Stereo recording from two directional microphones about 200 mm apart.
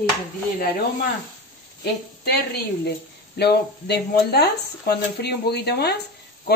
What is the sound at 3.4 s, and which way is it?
A woman's voice, 55° left (ahead or behind).